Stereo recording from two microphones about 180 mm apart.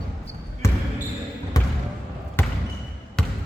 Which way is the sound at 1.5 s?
20° left (ahead or behind).